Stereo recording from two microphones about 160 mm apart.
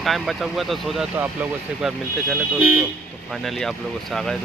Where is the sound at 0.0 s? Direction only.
Centre (ahead or behind).